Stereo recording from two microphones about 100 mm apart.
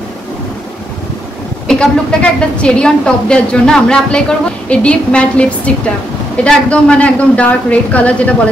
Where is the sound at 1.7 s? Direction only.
5° left (ahead or behind).